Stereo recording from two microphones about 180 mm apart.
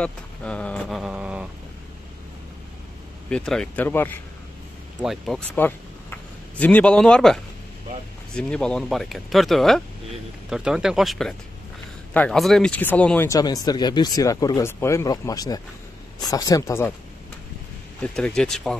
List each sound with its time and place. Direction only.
0.0 s vehicle: 5° left (ahead or behind)
3.3 s speech: 5° left (ahead or behind)
5.0 s speech: centre (ahead or behind)
5.6 s speech: 10° left (ahead or behind)
8.4 s speech: 5° left (ahead or behind)
18.0 s speech: 5° left (ahead or behind)